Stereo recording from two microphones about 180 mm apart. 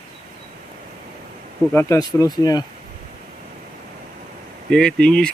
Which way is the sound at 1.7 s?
20° left (ahead or behind).